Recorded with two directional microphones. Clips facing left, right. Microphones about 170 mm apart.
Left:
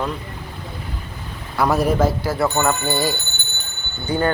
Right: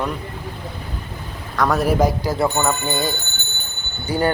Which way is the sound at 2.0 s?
15° right (ahead or behind).